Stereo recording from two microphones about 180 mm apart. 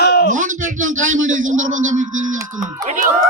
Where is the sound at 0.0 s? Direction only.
65° left (ahead or behind).